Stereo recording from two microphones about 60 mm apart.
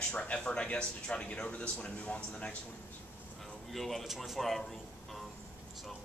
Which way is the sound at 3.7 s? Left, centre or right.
Centre.